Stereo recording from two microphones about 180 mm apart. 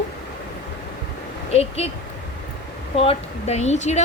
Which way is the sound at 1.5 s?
35° left (ahead or behind).